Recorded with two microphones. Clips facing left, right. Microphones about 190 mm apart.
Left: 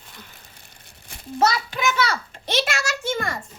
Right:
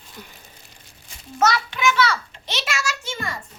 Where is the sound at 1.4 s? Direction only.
35° left (ahead or behind); by 3.3 s 50° left (ahead or behind).